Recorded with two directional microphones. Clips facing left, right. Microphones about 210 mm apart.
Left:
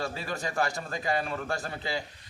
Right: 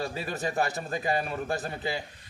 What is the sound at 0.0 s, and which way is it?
A man's voice, 20° right (ahead or behind).